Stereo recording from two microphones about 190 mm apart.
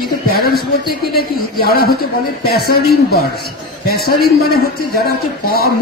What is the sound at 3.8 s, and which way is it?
A man's voice, 55° left (ahead or behind).